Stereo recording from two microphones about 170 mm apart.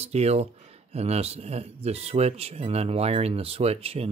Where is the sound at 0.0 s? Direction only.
40° right (ahead or behind).